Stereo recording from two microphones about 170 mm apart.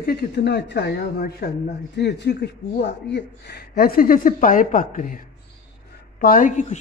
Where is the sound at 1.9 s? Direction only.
80° left.